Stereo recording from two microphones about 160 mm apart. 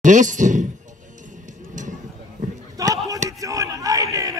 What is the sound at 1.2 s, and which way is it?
Music, 50° right (ahead or behind).